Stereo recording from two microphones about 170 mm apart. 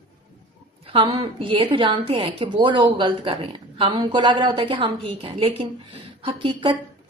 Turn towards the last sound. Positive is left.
turn(degrees=-30)  # may be behind; listen again after turning